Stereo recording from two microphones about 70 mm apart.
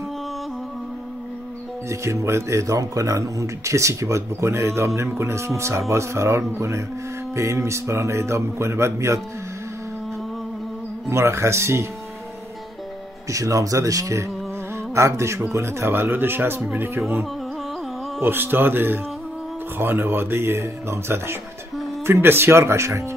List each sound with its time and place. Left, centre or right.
1.9 s speech: right
11.1 s speech: right
13.3 s speech: right
18.2 s speech: right